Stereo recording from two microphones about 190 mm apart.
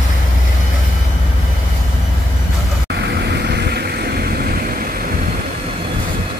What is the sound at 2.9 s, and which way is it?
Vehicle, 60° right (ahead or behind).